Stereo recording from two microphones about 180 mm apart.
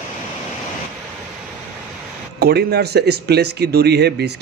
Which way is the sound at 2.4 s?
65° right (ahead or behind).